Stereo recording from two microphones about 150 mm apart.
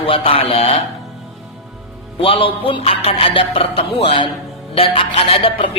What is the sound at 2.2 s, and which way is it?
Speech, 35° left (ahead or behind).